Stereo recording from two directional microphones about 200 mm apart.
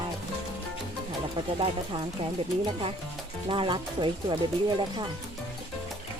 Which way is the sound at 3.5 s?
25° right (ahead or behind).